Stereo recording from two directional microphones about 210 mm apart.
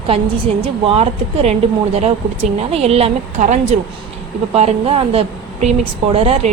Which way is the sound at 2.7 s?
30° right (ahead or behind).